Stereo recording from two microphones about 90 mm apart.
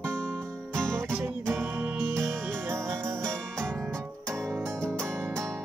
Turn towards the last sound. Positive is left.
turn(degrees=-30)  # may be behind; listen again after turning